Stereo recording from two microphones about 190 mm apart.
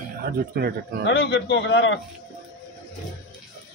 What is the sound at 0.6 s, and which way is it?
Speech, 55° right (ahead or behind).